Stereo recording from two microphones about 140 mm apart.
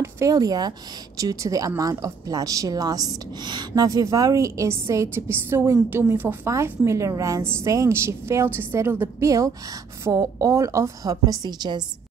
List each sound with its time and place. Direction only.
0.0 s a woman's voice: 25° right (ahead or behind)